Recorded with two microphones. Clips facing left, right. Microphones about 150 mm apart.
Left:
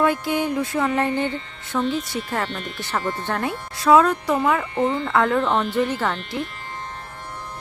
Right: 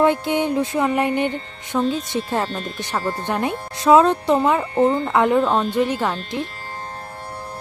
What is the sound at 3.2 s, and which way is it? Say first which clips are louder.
Speech: right 3 dB; 20° right (ahead or behind).